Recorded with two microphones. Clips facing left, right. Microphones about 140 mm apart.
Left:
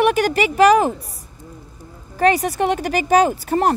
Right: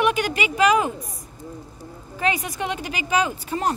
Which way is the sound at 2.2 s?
40° left (ahead or behind).